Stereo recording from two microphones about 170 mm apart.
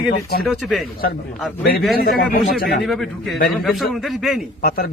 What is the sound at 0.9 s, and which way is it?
Speech, 60° left (ahead or behind).